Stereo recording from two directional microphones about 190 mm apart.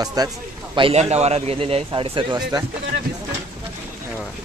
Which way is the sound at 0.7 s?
30° right (ahead or behind).